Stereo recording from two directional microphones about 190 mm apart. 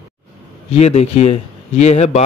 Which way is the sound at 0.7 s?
35° left (ahead or behind).